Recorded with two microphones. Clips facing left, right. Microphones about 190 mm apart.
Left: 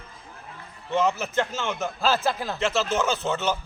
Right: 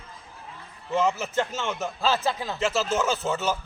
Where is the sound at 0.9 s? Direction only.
5° right (ahead or behind).